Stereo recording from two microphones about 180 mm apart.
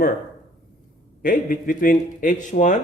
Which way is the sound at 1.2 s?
50° left (ahead or behind).